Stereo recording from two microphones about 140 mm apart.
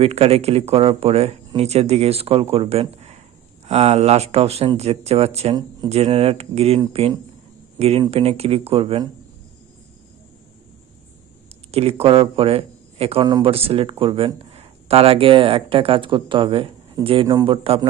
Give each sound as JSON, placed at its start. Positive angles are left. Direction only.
{"t": 0.0, "sound": "a man's voice", "side_deg": -45}
{"t": 11.7, "sound": "a man's voice", "side_deg": -45}
{"t": 13.2, "sound": "speech", "side_deg": -30}
{"t": 13.5, "sound": "a man's voice", "side_deg": -45}